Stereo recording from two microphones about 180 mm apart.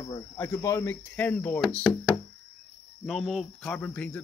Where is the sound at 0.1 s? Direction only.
20° left (ahead or behind).